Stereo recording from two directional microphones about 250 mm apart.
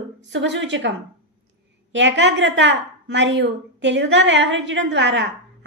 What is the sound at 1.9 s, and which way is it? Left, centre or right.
A woman's voice, right.